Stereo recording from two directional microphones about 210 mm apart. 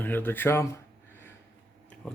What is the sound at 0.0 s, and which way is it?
Speech, 10° left (ahead or behind).